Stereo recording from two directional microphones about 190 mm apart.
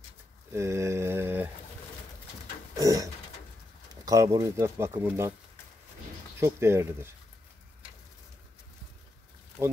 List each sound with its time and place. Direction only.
0.5 s mantra: 15° right (ahead or behind)
2.7 s pigeon: 20° right (ahead or behind)
3.9 s speech: 20° right (ahead or behind)
6.4 s speech: 15° right (ahead or behind)